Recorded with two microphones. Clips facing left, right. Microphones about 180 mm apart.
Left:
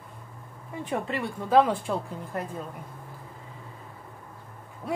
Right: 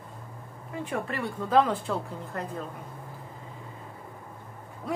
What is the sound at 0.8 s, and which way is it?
A woman's voice, 20° left (ahead or behind).